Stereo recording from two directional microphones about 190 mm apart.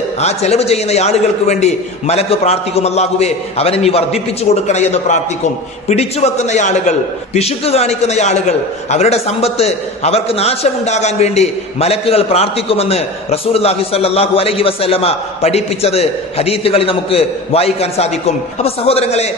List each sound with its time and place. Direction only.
0.2 s a man's voice: 35° left (ahead or behind)